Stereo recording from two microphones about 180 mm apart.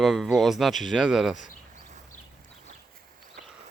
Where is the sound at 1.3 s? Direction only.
45° left (ahead or behind).